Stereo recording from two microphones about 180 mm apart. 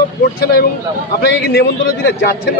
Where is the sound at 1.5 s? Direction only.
65° left (ahead or behind).